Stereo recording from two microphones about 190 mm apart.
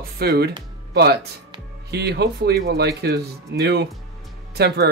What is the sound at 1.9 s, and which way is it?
Speech, 60° right (ahead or behind).